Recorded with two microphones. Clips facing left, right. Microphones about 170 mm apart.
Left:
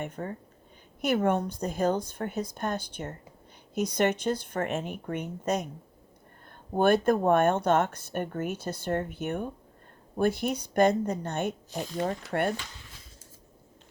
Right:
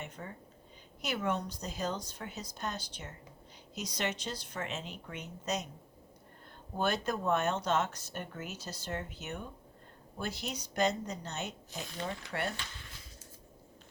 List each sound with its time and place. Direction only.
0.0 s a woman's voice: 50° left (ahead or behind)
6.7 s a woman's voice: 55° left (ahead or behind)